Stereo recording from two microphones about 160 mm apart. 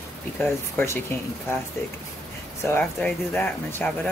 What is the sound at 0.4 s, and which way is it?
Speech, 15° left (ahead or behind).